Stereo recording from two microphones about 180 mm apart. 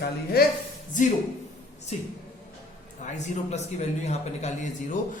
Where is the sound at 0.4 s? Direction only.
60° left (ahead or behind).